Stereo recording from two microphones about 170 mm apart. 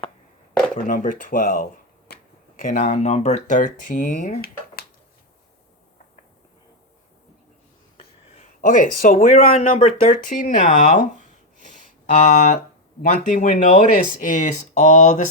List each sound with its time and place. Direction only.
0.9 s speech: 50° left (ahead or behind)
2.8 s speech: 40° left (ahead or behind); by 4.9 s 60° left (ahead or behind)
8.6 s speech: 50° left (ahead or behind)
11.6 s a sound: 45° left (ahead or behind)
12.5 s speech: 55° left (ahead or behind)